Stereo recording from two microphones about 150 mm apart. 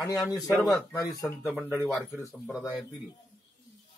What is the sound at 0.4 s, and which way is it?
Speech, centre (ahead or behind).